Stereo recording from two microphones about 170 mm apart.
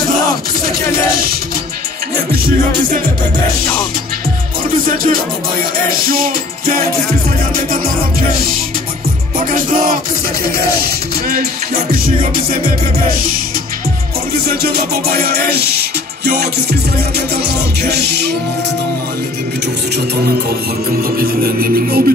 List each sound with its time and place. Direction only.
2.3 s music: 60° right (ahead or behind)
4.8 s music: 55° right (ahead or behind)
9.4 s music: 55° right (ahead or behind)
14.4 s music: 65° right (ahead or behind)
21.2 s music: 60° right (ahead or behind)